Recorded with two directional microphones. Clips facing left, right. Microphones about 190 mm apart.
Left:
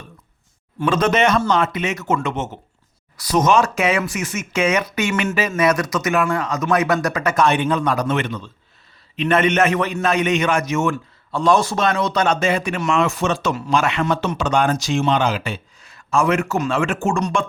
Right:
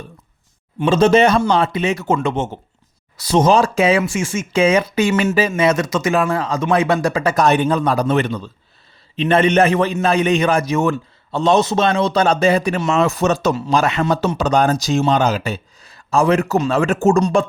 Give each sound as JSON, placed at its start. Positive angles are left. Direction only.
{"t": 0.8, "sound": "a man's voice", "side_deg": -25}